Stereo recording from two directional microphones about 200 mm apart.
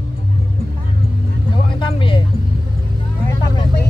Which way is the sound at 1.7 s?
25° left (ahead or behind).